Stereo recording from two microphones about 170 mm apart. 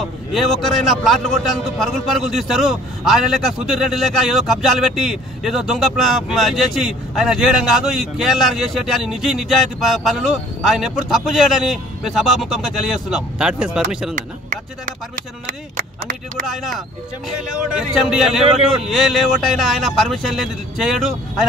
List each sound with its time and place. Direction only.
0.0 s a man's voice: centre (ahead or behind)
14.1 s speech: 50° right (ahead or behind)
16.4 s a man's voice: centre (ahead or behind)